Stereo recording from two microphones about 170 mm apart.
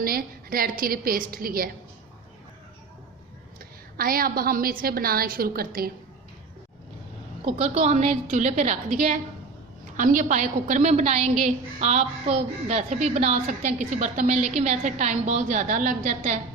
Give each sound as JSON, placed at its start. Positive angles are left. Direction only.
{"t": 0.0, "sound": "a woman's voice", "side_deg": -60}
{"t": 3.9, "sound": "a woman's voice", "side_deg": -60}
{"t": 7.4, "sound": "a woman's voice", "side_deg": -40}